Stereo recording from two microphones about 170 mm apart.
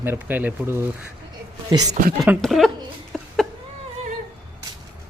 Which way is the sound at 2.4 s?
Centre (ahead or behind).